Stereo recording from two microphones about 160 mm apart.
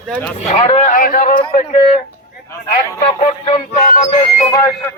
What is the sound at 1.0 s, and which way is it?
Speech, 60° left (ahead or behind).